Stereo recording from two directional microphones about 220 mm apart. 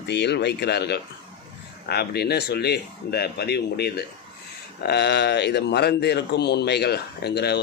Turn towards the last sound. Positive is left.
turn(degrees=45)  # may be behind; listen again after turning